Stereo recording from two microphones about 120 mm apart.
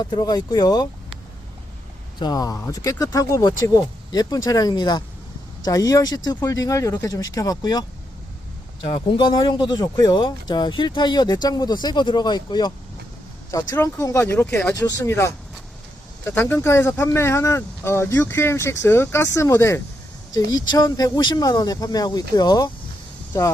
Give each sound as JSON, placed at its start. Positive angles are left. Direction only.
{"t": 0.0, "sound": "speech", "side_deg": 35}
{"t": 2.1, "sound": "speech", "side_deg": 35}
{"t": 8.8, "sound": "speech", "side_deg": 45}
{"t": 13.5, "sound": "speech", "side_deg": 25}
{"t": 14.4, "sound": "speech", "side_deg": 10}
{"t": 14.8, "sound": "speech", "side_deg": 30}
{"t": 23.3, "sound": "speech", "side_deg": 25}